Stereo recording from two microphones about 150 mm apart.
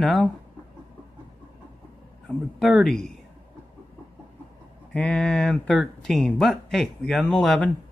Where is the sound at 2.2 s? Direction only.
Centre (ahead or behind).